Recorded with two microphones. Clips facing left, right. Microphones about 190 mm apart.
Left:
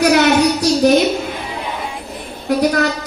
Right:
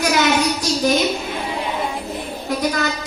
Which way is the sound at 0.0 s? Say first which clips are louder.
Left 6 dB; 65° left (ahead or behind).